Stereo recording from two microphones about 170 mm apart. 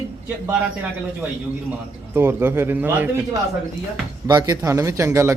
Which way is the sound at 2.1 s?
15° right (ahead or behind).